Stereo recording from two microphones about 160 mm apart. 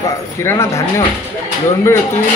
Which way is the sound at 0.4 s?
15° left (ahead or behind).